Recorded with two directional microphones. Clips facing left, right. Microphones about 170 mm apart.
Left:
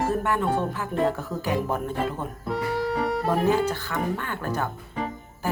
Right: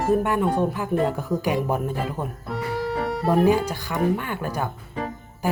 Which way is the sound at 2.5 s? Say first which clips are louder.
Left 2 dB; centre (ahead or behind).